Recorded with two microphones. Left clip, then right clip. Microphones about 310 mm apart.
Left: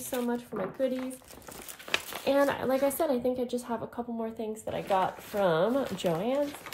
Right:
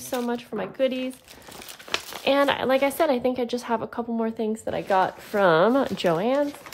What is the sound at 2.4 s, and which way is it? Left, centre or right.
Speech, centre.